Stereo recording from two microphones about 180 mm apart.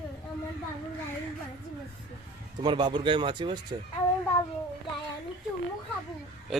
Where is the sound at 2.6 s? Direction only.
25° right (ahead or behind).